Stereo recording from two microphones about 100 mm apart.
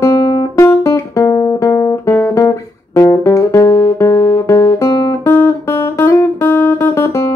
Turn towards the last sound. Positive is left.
turn(degrees=20)  # may be behind; listen again after turning